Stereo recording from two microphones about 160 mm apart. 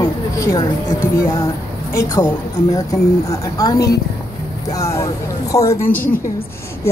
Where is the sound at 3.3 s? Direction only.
20° left (ahead or behind).